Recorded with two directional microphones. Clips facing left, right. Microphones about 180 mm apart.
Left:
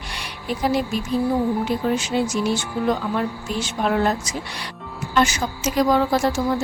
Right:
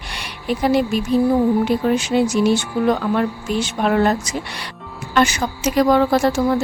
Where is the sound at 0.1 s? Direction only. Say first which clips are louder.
Right 5 dB; 65° right (ahead or behind).